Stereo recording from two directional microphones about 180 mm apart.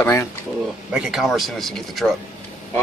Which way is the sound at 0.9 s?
5° right (ahead or behind).